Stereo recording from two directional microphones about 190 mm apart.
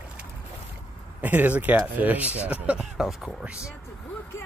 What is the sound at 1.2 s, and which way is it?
Speech, 10° right (ahead or behind).